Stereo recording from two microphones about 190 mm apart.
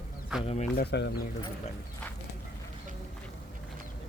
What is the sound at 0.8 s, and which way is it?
Speech, 65° left (ahead or behind).